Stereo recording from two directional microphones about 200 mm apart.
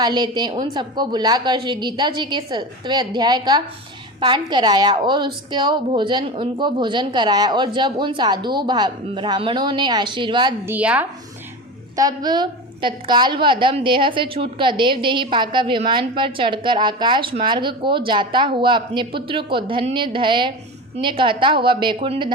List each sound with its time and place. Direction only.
0.0 s a woman's voice: 20° right (ahead or behind)
10.7 s a woman's voice: 10° right (ahead or behind)
11.9 s a woman's voice: 20° right (ahead or behind)